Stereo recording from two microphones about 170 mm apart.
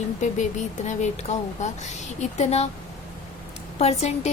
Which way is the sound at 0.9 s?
40° left (ahead or behind).